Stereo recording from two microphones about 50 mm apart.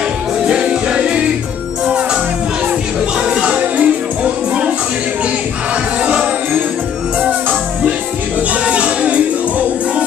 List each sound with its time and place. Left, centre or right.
0.5 s music: centre
3.3 s music: centre
8.6 s music: right